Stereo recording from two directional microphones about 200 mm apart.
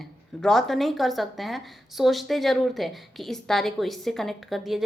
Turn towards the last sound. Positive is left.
turn(degrees=0)  # may be behind; listen again after turning